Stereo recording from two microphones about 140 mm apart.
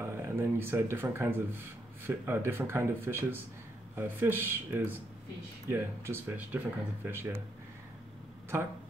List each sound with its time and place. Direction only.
0.0 s speech: 15° right (ahead or behind)